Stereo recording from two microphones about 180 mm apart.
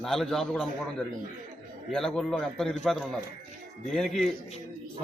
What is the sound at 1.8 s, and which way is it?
Speech, 5° left (ahead or behind).